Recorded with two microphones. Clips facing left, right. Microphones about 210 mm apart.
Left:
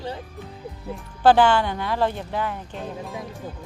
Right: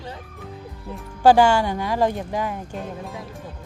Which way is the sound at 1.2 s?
10° right (ahead or behind).